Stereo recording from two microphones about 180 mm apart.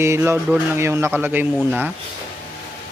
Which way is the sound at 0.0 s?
15° right (ahead or behind).